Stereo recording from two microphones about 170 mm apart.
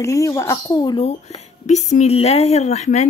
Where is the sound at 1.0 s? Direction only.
40° left (ahead or behind).